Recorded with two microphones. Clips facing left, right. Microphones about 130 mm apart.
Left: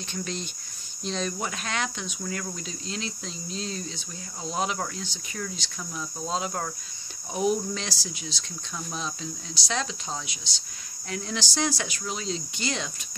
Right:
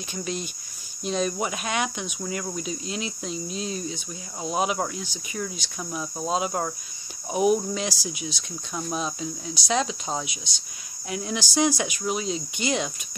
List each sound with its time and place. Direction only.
0.1 s cricket: 10° right (ahead or behind)
5.9 s cricket: 25° right (ahead or behind)
6.2 s cricket: 15° right (ahead or behind)